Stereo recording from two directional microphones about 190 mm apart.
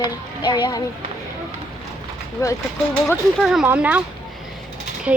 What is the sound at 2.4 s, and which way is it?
Speech, 15° left (ahead or behind).